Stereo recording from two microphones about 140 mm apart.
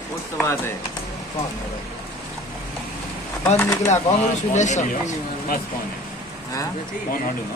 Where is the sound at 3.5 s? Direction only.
20° left (ahead or behind).